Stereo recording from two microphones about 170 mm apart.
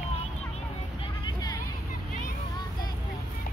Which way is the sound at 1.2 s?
20° left (ahead or behind).